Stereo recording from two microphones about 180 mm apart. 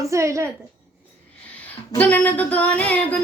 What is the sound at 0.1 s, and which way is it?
Speech, 15° right (ahead or behind).